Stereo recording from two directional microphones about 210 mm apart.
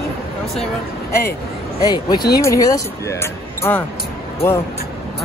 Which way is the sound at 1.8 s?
20° left (ahead or behind).